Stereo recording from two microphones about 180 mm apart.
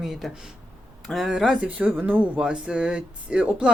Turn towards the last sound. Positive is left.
turn(degrees=-5)  # may be behind; listen again after turning